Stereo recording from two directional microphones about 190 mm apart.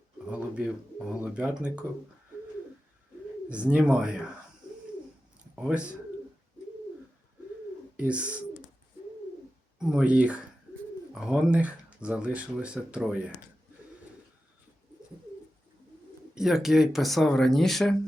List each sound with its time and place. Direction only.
0.3 s speech: 5° right (ahead or behind)
3.5 s speech: 5° right (ahead or behind)
5.5 s speech: 5° right (ahead or behind)
7.9 s speech: 5° right (ahead or behind)
9.7 s speech: 5° right (ahead or behind)
16.3 s speech: centre (ahead or behind)